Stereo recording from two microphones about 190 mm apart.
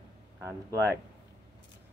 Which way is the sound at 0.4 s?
15° right (ahead or behind).